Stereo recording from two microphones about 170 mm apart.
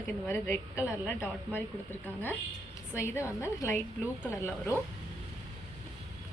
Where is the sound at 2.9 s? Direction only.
15° left (ahead or behind).